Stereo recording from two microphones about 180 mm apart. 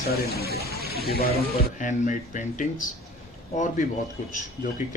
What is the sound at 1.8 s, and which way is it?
Speech, 45° left (ahead or behind).